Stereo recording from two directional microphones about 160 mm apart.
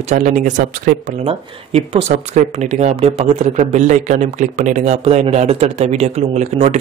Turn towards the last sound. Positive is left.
turn(degrees=-45)  # may be behind; listen again after turning